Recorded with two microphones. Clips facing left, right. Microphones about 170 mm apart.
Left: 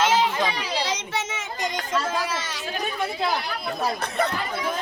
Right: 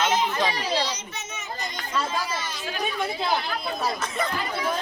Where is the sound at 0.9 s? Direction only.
90° left.